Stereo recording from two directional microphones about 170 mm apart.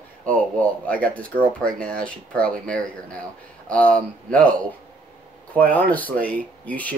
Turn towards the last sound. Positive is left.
turn(degrees=10)  # may be behind; listen again after turning